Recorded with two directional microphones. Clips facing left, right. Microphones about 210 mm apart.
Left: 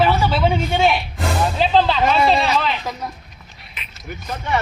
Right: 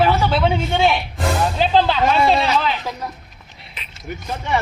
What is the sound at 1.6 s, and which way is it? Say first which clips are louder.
Speech: left 1 dB; 5° right (ahead or behind).